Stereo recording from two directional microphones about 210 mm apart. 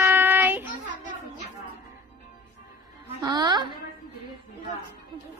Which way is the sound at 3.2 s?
20° right (ahead or behind).